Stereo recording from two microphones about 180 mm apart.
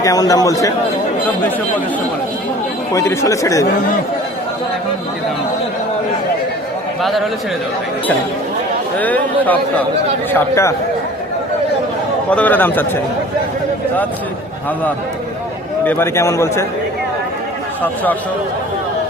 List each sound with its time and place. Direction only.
0.0 s a man's voice: 20° left (ahead or behind)
2.9 s a man's voice: 15° left (ahead or behind)
7.0 s a man's voice: centre (ahead or behind)
9.0 s a man's voice: 10° left (ahead or behind)
12.3 s a man's voice: 10° left (ahead or behind)
15.8 s a man's voice: 10° left (ahead or behind)